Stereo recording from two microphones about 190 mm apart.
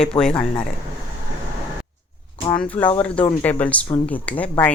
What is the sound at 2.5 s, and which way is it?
Speech, 5° left (ahead or behind).